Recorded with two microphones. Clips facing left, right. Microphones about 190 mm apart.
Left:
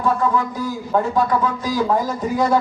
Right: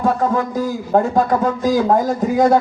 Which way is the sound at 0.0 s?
50° right (ahead or behind).